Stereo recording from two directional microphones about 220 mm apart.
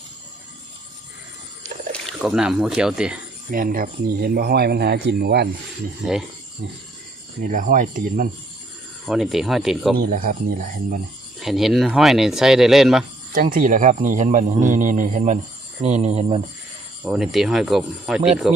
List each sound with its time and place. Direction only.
1.9 s speech: centre (ahead or behind)
3.5 s speech: 40° right (ahead or behind)
7.4 s speech: 35° right (ahead or behind)
9.0 s speech: centre (ahead or behind)
10.0 s speech: 40° right (ahead or behind)
11.3 s speech: centre (ahead or behind)
13.3 s speech: 40° right (ahead or behind)
17.0 s speech: centre (ahead or behind)